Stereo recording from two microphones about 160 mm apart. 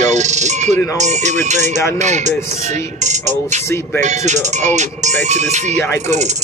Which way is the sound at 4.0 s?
45° right (ahead or behind).